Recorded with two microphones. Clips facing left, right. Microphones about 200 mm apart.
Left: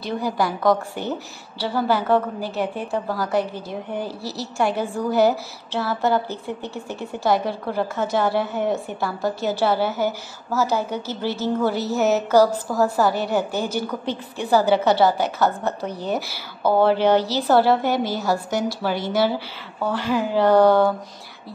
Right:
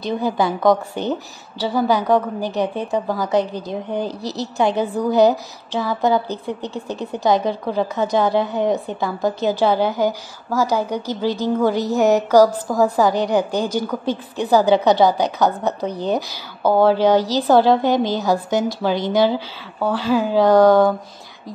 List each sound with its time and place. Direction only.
0.0 s a woman's voice: 20° right (ahead or behind)